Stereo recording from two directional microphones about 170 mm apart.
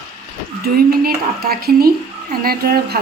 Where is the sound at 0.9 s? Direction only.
60° right (ahead or behind).